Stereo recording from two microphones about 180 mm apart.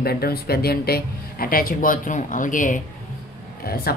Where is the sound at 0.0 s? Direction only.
60° left (ahead or behind).